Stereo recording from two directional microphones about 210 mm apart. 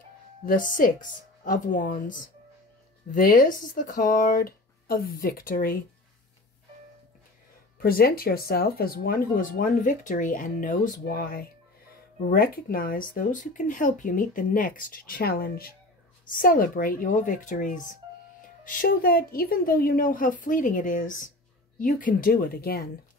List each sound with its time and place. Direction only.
0.5 s speech: 40° left (ahead or behind)
7.8 s speech: 45° left (ahead or behind)